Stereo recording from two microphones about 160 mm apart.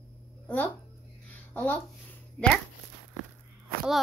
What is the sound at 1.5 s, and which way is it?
Speech, 10° left (ahead or behind).